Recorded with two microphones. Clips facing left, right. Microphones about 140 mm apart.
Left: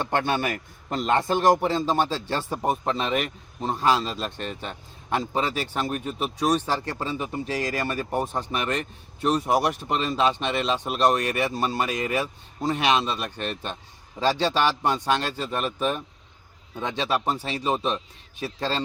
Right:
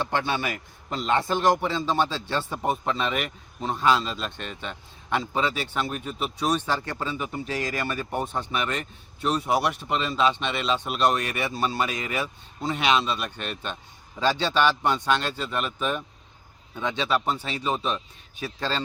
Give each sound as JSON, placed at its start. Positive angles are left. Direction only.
{"t": 0.0, "sound": "a man's voice", "side_deg": 50}